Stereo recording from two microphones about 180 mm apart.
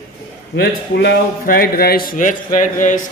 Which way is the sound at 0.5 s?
70° left (ahead or behind).